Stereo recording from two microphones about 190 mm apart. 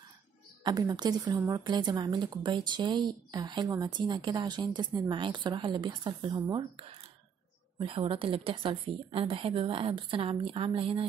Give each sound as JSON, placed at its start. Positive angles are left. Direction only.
{"t": 0.7, "sound": "a woman's voice", "side_deg": -20}